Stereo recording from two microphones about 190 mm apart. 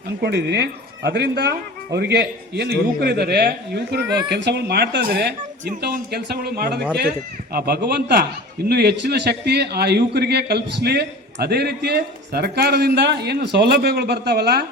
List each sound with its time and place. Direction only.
0.2 s a man's voice: 60° right (ahead or behind)